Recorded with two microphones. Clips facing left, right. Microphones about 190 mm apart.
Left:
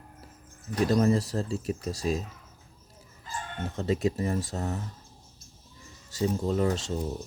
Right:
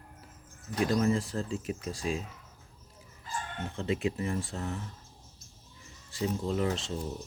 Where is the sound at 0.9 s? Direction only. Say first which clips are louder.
Left 4 dB; 40° left (ahead or behind).